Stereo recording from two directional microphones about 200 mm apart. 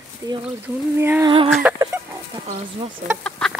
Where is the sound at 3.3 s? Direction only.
5° left (ahead or behind).